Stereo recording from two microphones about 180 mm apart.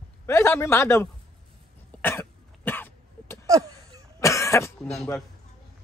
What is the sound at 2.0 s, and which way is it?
Cough, 10° left (ahead or behind).